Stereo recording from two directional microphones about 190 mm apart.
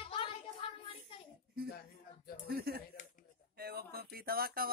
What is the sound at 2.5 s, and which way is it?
Speech, 55° right (ahead or behind).